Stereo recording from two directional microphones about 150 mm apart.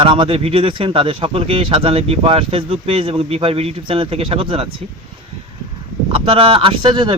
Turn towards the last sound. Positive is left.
turn(degrees=-30)  # may be behind; listen again after turning